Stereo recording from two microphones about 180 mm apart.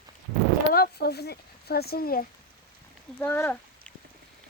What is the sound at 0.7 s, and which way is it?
A child's voice, 60° left (ahead or behind).